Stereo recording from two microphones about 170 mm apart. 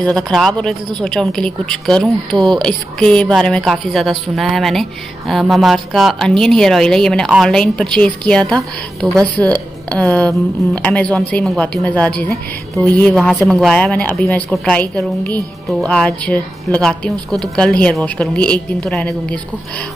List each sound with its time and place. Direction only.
0.0 s a woman's voice: centre (ahead or behind)